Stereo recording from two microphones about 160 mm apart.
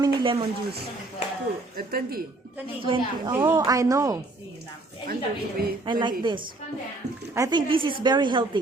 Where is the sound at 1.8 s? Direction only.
65° right (ahead or behind).